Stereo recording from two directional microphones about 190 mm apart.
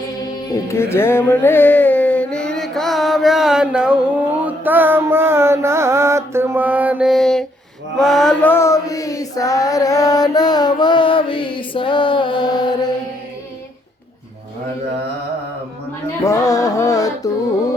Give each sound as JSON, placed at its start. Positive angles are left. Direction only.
{"t": 0.5, "sound": "music", "side_deg": 15}
{"t": 7.9, "sound": "a sound", "side_deg": 0}
{"t": 16.2, "sound": "music", "side_deg": 15}